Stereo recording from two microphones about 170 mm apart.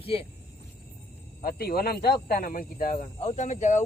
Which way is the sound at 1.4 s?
65° left (ahead or behind).